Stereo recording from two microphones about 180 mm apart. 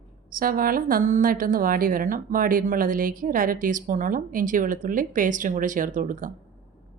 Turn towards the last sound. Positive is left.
turn(degrees=-45)  # may be behind; listen again after turning